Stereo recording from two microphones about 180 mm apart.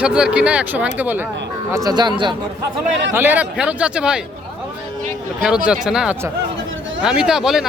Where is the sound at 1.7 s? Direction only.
20° right (ahead or behind).